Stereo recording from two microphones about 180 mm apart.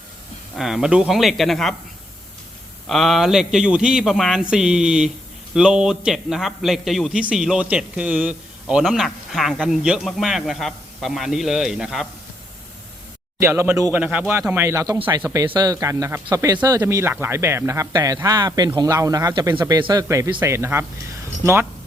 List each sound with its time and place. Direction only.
0.5 s a man's voice: centre (ahead or behind)
2.9 s a man's voice: centre (ahead or behind)
13.4 s speech: 15° right (ahead or behind)